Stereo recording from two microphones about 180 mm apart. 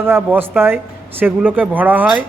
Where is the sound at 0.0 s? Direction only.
10° right (ahead or behind).